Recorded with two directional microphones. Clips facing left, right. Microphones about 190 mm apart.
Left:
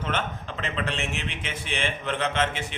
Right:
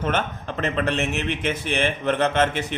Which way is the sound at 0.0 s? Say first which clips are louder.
Right 5 dB; 50° right (ahead or behind).